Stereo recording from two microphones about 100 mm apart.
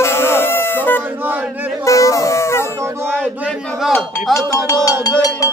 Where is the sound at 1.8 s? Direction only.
30° left (ahead or behind).